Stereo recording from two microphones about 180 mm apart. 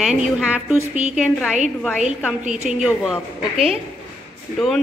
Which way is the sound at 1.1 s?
5° right (ahead or behind).